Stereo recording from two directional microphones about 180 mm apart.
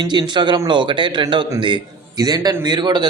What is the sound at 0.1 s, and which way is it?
A man's voice, 25° right (ahead or behind).